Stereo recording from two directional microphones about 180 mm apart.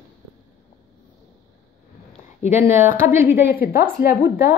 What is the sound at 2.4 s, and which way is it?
Speech, 40° left (ahead or behind).